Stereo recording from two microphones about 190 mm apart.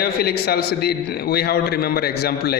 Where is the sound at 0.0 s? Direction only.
55° left (ahead or behind).